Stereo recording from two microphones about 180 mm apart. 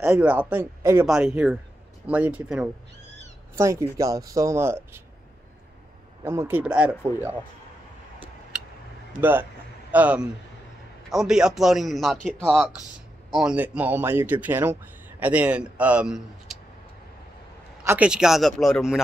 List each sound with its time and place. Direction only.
0.0 s a man's voice: 10° right (ahead or behind)
6.2 s speech: 15° right (ahead or behind)
9.2 s a man's voice: 10° right (ahead or behind)
17.8 s a man's voice: 5° right (ahead or behind)